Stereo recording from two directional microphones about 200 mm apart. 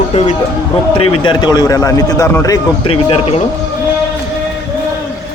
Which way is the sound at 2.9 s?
30° left (ahead or behind).